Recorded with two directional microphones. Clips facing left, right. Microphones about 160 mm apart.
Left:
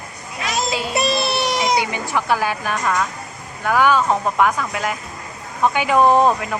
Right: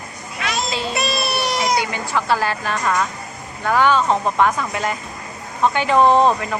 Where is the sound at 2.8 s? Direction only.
Centre (ahead or behind).